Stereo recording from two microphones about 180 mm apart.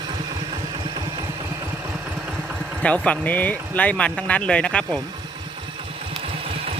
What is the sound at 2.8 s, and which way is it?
Speech, 5° left (ahead or behind).